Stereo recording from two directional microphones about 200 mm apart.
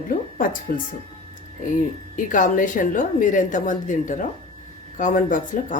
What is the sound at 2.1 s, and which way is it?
A woman's voice, 40° left (ahead or behind).